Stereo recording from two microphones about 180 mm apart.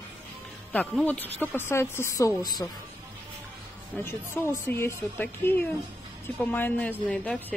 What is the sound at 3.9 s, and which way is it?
A woman's voice, 10° left (ahead or behind).